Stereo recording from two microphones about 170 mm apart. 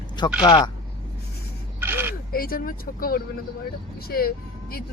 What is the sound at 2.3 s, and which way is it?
Speech, 60° left (ahead or behind).